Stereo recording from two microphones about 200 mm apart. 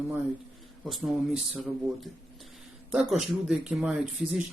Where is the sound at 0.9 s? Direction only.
Centre (ahead or behind).